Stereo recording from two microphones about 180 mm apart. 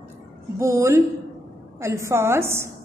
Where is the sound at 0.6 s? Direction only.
15° right (ahead or behind).